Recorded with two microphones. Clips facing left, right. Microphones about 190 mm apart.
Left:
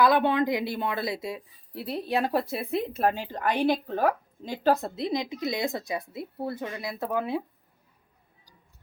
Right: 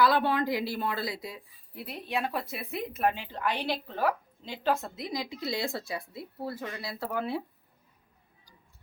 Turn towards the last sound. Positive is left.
turn(degrees=15)  # may be behind; listen again after turning